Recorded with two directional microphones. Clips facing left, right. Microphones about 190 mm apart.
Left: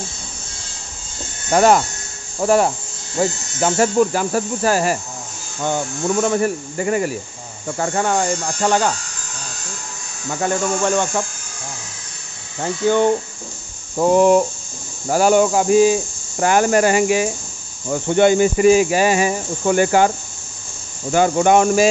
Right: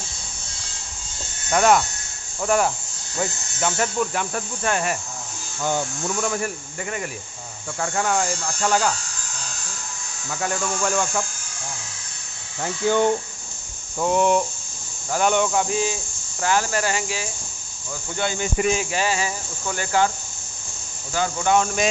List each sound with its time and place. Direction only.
1.5 s speech: 30° left (ahead or behind)
4.3 s speech: 5° left (ahead or behind)
5.6 s speech: 20° left (ahead or behind)
6.4 s speech: centre (ahead or behind)
7.6 s speech: 25° left (ahead or behind)
10.4 s speech: 25° left (ahead or behind)
12.6 s speech: 20° left (ahead or behind)
13.9 s speech: 35° left (ahead or behind)
15.0 s cricket: 40° left (ahead or behind); by 18.4 s 60° left (ahead or behind)
18.4 s speech: 5° left (ahead or behind)
19.1 s cricket: 60° left (ahead or behind)
19.7 s speech: 15° left (ahead or behind)
21.1 s cricket: 55° left (ahead or behind)